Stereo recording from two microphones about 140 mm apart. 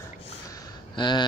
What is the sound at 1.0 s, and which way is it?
Speech, 30° left (ahead or behind).